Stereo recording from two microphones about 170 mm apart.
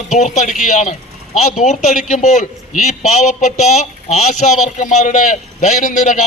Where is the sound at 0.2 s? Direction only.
45° left (ahead or behind).